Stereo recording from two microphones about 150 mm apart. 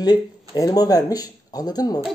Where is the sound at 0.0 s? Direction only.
25° left (ahead or behind).